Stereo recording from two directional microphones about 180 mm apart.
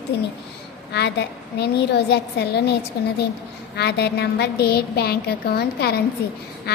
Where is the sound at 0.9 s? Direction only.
70° left (ahead or behind).